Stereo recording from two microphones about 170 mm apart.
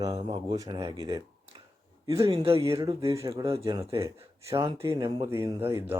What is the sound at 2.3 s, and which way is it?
Speech, 35° right (ahead or behind).